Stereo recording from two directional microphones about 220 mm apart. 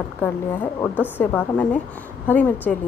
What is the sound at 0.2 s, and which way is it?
A woman's voice, 10° left (ahead or behind).